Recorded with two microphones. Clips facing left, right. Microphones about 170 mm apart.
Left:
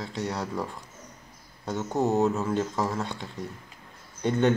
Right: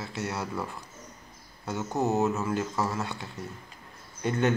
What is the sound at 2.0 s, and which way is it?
Speech, 5° right (ahead or behind).